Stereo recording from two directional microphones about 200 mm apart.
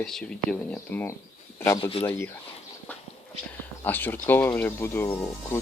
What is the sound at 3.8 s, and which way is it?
Speech, 10° left (ahead or behind).